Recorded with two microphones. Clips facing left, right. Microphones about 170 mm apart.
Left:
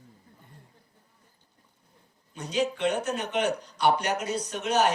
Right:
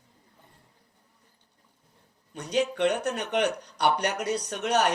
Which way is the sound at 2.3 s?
65° right (ahead or behind).